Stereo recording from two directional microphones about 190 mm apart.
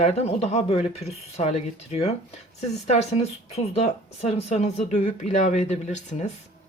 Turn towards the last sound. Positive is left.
turn(degrees=40)  # may be behind; listen again after turning